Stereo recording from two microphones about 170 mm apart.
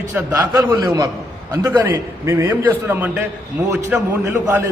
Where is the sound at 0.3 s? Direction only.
20° right (ahead or behind).